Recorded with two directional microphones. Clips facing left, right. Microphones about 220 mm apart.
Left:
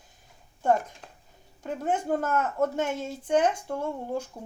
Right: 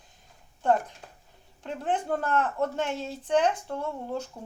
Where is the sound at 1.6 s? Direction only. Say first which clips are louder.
Left 1 dB; 10° left (ahead or behind).